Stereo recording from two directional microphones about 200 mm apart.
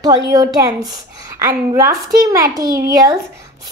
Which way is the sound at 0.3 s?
20° right (ahead or behind).